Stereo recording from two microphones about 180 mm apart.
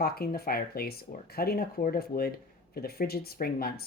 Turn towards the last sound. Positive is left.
turn(degrees=55)  # may be behind; listen again after turning